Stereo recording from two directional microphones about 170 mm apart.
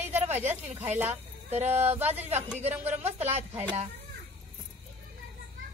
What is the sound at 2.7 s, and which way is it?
Speech, 10° right (ahead or behind).